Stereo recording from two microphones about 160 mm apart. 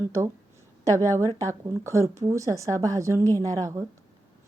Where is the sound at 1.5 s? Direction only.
20° right (ahead or behind).